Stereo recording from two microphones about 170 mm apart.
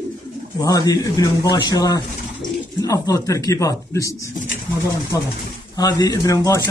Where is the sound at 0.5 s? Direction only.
20° left (ahead or behind).